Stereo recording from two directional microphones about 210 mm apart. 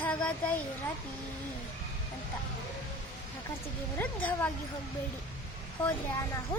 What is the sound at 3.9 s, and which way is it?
Speech, 10° left (ahead or behind).